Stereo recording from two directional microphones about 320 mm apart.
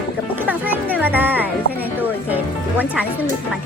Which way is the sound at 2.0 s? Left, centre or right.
Centre.